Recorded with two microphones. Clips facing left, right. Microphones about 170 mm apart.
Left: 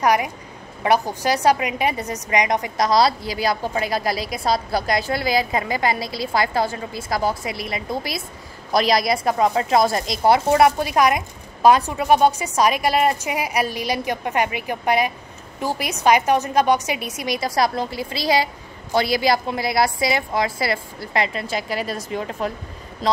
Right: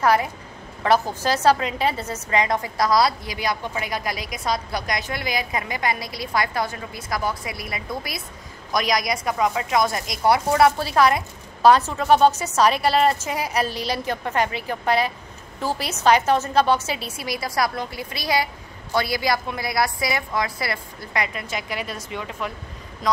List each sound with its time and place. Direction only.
0.0 s a woman's voice: 15° left (ahead or behind); by 22.5 s 40° left (ahead or behind)